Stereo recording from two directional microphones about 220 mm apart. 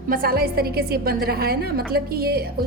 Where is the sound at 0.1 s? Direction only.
40° right (ahead or behind).